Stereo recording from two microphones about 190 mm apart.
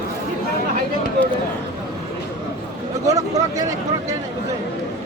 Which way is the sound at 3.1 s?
20° right (ahead or behind).